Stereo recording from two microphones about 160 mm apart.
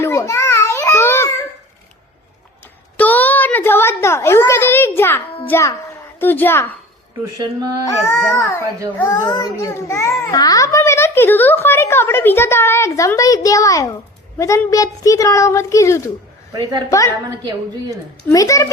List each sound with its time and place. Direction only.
0.0 s a sound: 20° left (ahead or behind)
3.0 s a sound: 10° left (ahead or behind)
5.5 s a child's voice: 15° left (ahead or behind)
7.3 s a woman's voice: 25° right (ahead or behind)
7.9 s a child's voice: 20° left (ahead or behind)
16.5 s a woman's voice: 20° right (ahead or behind)
17.9 s a child's voice: 20° left (ahead or behind)